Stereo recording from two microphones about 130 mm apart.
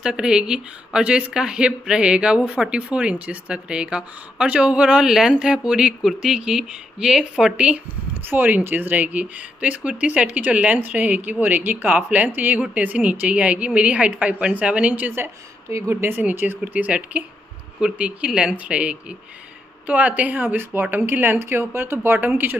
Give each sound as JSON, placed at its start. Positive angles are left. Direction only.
{"t": 0.0, "sound": "a woman's voice", "side_deg": -5}